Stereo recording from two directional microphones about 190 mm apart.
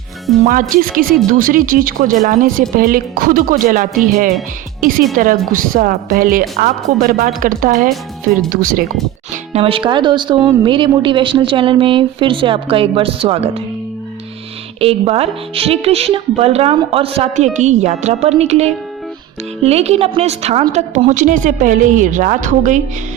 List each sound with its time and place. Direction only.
0.7 s speech: 45° right (ahead or behind)
9.3 s speech: 35° right (ahead or behind)
14.8 s a woman's voice: 30° right (ahead or behind)